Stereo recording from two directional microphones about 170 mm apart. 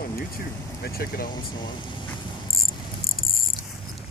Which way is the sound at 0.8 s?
65° left (ahead or behind).